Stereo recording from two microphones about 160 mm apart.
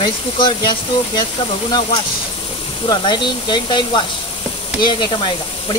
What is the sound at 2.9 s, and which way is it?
Speech, 30° left (ahead or behind).